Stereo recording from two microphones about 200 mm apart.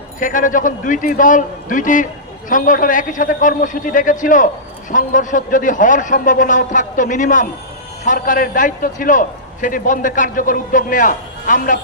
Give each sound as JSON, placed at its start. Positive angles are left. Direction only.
{"t": 0.2, "sound": "a man's voice", "side_deg": 40}